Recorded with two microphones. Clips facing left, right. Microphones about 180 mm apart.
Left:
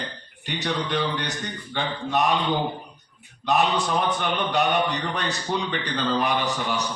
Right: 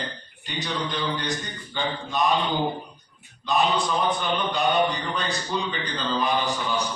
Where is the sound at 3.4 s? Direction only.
70° left (ahead or behind).